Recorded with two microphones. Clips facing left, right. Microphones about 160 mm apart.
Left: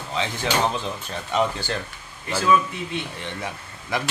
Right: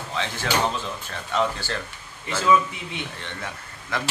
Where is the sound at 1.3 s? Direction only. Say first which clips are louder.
Left 1 dB; 15° left (ahead or behind).